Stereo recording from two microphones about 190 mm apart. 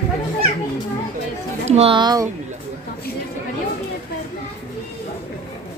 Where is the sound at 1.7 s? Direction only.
30° right (ahead or behind).